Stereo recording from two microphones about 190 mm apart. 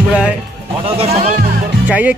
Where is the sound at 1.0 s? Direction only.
35° right (ahead or behind).